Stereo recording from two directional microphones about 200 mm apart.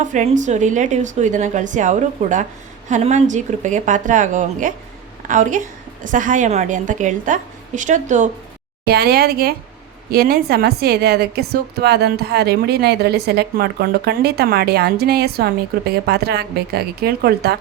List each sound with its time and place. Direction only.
0.1 s a woman's voice: 40° right (ahead or behind)
8.8 s a woman's voice: 50° right (ahead or behind)